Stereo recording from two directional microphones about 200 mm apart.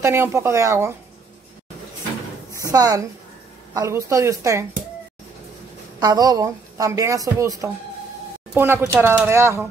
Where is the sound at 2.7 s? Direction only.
20° right (ahead or behind).